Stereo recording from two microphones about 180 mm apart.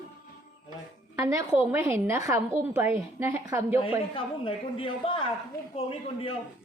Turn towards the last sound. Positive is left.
turn(degrees=30)  # may be behind; listen again after turning